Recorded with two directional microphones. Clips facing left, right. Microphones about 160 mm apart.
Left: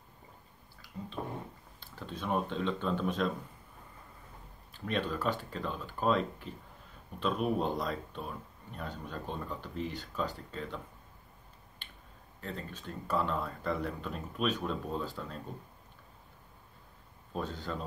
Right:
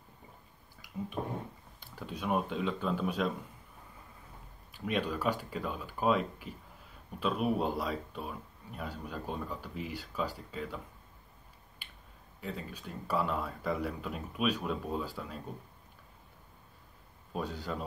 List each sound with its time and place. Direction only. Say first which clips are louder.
0.8 s a sound: right 3 dB; 15° right (ahead or behind)
1.8 s speech: right 1 dB; 10° right (ahead or behind)
4.7 s speech: right 1 dB; 10° right (ahead or behind)
11.8 s finger snapping: left 1 dB; 10° right (ahead or behind)
12.4 s speech: right 1 dB; 10° right (ahead or behind)
17.3 s speech: even; 10° right (ahead or behind)